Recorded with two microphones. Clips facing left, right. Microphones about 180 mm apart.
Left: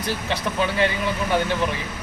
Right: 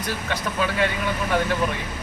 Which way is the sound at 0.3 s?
25° left (ahead or behind).